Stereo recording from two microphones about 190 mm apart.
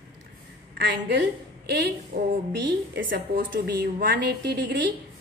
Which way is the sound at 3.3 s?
50° right (ahead or behind).